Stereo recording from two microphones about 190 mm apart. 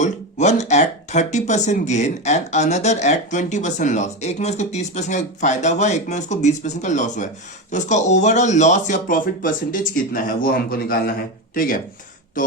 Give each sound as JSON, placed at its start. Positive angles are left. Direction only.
{"t": 0.0, "sound": "speech", "side_deg": 35}